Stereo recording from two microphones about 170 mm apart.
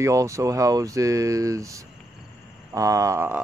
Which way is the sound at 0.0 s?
20° right (ahead or behind).